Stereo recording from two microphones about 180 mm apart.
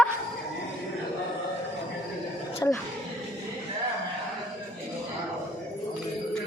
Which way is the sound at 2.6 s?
15° left (ahead or behind).